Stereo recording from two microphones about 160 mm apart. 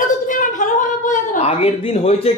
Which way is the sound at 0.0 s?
55° left (ahead or behind).